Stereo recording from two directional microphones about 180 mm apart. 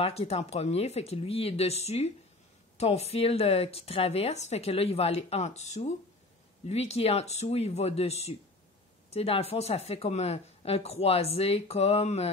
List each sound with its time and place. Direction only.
0.0 s speech: 35° left (ahead or behind)